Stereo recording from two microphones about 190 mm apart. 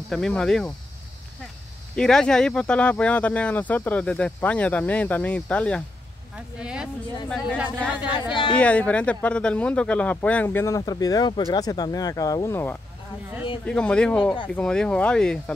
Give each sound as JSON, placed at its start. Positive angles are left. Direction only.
{"t": 0.1, "sound": "speech", "side_deg": 5}
{"t": 2.0, "sound": "speech", "side_deg": 5}
{"t": 6.3, "sound": "speech", "side_deg": -5}
{"t": 8.5, "sound": "speech", "side_deg": 5}